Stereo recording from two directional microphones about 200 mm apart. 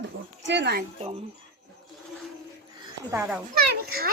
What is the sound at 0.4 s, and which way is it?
Speech, 60° right (ahead or behind).